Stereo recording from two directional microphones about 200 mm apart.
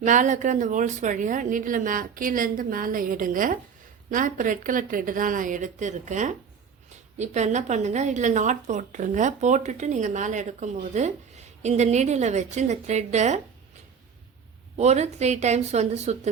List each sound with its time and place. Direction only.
0.0 s speech: 40° right (ahead or behind)
14.8 s speech: 35° right (ahead or behind)